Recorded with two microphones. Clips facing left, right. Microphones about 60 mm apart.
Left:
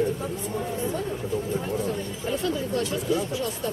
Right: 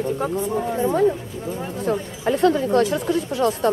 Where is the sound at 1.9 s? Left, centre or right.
Right.